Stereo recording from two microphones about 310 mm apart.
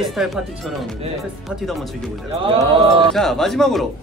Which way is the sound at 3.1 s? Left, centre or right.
Centre.